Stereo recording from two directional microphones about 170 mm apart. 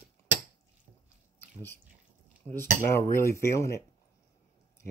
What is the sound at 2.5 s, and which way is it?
Speech, 15° left (ahead or behind).